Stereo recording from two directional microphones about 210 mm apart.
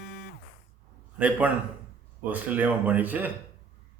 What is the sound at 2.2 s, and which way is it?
A man's voice, 10° right (ahead or behind).